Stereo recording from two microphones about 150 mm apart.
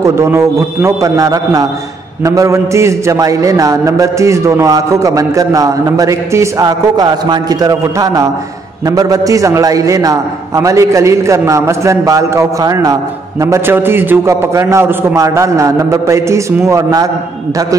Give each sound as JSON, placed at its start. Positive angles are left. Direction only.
{"t": 0.0, "sound": "a man's voice", "side_deg": -20}